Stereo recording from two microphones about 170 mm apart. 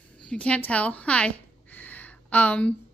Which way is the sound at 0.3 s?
5° left (ahead or behind).